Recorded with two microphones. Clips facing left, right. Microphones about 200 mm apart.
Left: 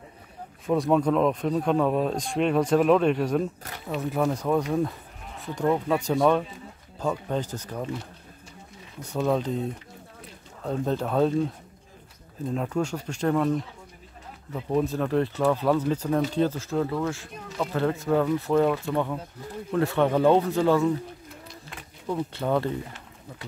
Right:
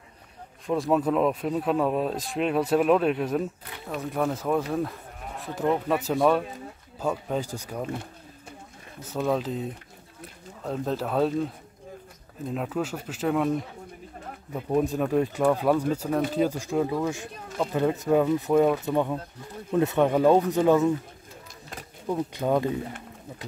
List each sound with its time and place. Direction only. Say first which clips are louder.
0.7 s speech: left 2 dB; centre (ahead or behind)
9.0 s speech: left 1 dB; centre (ahead or behind)
12.4 s speech: left 2 dB; 5° right (ahead or behind)
14.5 s speech: right 1 dB; 15° right (ahead or behind)
22.0 s speech: right 1 dB; 15° right (ahead or behind)